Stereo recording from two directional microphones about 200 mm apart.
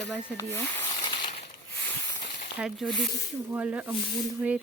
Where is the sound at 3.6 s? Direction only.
10° right (ahead or behind).